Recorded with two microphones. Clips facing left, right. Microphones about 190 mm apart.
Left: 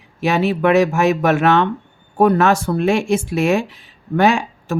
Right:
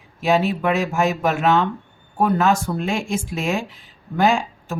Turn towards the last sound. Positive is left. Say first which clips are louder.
# left 3 dB
turn(degrees=70)  # may be behind; listen again after turning